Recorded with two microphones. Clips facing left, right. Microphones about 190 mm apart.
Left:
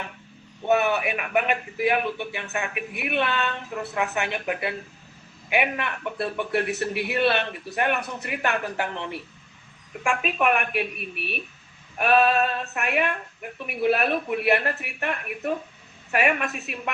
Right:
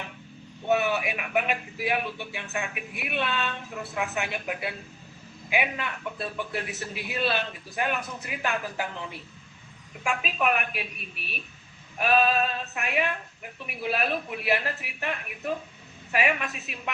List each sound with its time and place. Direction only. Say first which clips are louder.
0.7 s a woman's voice: left 3 dB; 60° left (ahead or behind)